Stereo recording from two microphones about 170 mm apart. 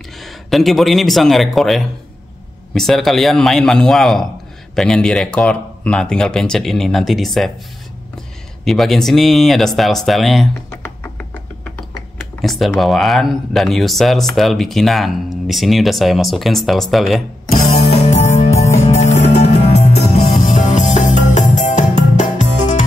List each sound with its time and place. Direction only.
0.2 s speech: centre (ahead or behind)
8.6 s speech: centre (ahead or behind)
10.5 s music: 15° left (ahead or behind)
12.4 s speech: centre (ahead or behind)
17.7 s music: 40° left (ahead or behind)